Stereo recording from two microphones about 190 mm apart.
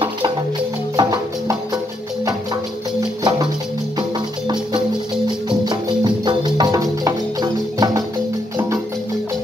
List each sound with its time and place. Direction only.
0.9 s music: 20° right (ahead or behind)
5.5 s music: 25° right (ahead or behind)